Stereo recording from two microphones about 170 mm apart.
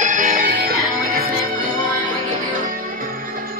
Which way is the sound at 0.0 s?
50° right (ahead or behind).